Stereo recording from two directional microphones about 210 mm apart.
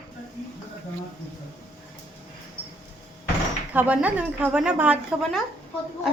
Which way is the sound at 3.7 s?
5° right (ahead or behind).